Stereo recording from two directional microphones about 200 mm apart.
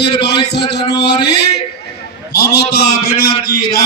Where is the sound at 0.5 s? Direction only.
55° left (ahead or behind).